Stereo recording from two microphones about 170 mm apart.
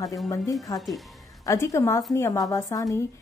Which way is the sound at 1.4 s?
20° left (ahead or behind).